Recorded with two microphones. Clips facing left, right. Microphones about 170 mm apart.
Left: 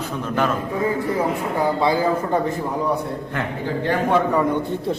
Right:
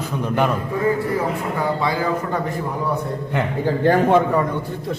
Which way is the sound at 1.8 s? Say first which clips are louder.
Left 2 dB; 25° left (ahead or behind).